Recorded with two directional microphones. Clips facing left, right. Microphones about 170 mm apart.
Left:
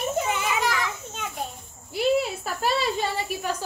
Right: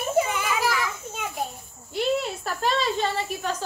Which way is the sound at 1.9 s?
5° left (ahead or behind).